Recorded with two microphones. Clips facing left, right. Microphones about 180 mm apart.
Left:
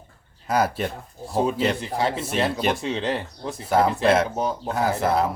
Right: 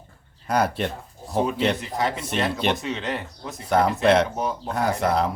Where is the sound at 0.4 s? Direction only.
5° left (ahead or behind).